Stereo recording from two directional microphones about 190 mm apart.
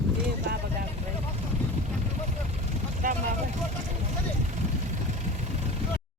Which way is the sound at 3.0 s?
45° right (ahead or behind).